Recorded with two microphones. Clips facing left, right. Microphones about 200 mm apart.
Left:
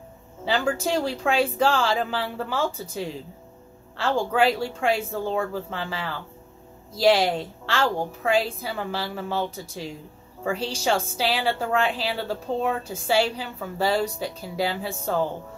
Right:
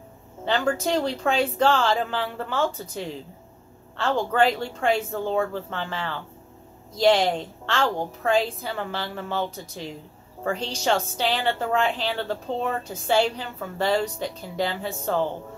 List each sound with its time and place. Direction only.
0.5 s a woman's voice: 5° left (ahead or behind)